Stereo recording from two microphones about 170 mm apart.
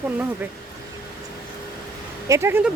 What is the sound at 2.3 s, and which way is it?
Speech, 15° right (ahead or behind).